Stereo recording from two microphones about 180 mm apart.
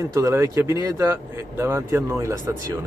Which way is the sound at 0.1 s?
15° right (ahead or behind).